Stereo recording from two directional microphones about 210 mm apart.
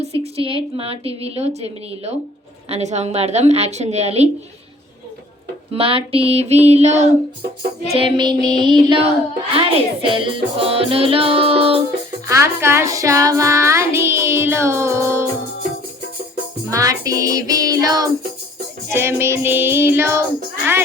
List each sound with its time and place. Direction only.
0.0 s music: 30° right (ahead or behind)
2.6 s a woman's voice: 30° right (ahead or behind)
5.7 s music: 25° right (ahead or behind)
12.3 s child singing: 10° right (ahead or behind)
16.7 s child singing: 15° right (ahead or behind)